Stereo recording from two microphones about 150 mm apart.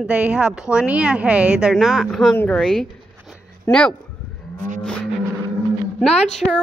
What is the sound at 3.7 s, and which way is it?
Speech, 15° left (ahead or behind).